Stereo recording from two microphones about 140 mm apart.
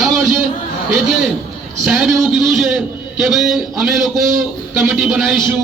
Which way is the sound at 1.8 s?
Centre (ahead or behind).